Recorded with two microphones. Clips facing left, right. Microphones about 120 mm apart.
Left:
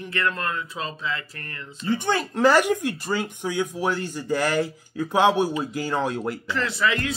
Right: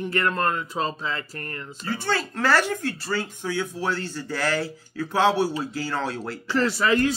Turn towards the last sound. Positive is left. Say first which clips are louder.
# right 4 dB
turn(degrees=-35)  # may be behind; listen again after turning